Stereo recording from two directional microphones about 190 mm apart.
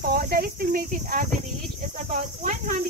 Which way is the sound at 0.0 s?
55° right (ahead or behind).